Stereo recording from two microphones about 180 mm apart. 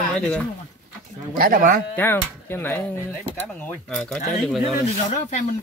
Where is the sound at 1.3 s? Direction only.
50° right (ahead or behind).